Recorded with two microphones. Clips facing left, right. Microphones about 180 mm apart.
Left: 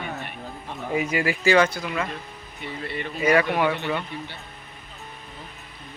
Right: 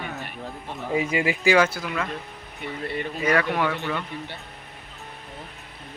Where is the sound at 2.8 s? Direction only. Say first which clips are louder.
Right 3 dB; 45° right (ahead or behind).